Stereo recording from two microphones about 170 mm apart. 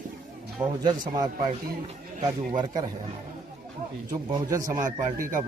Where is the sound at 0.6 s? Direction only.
25° right (ahead or behind).